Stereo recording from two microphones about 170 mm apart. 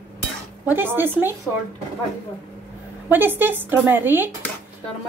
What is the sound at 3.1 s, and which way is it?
Speech, 10° right (ahead or behind).